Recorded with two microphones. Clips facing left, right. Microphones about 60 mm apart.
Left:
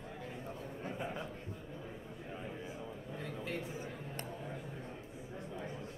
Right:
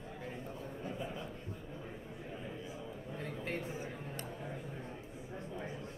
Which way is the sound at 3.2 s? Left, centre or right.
Right.